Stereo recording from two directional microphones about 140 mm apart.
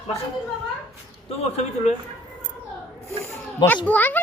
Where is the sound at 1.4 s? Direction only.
50° left (ahead or behind).